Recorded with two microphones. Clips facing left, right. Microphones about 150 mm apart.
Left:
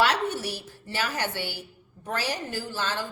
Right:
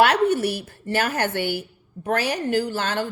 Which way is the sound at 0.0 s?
60° right (ahead or behind).